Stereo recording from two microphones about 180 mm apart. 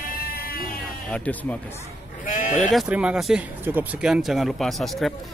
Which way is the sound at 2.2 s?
45° left (ahead or behind).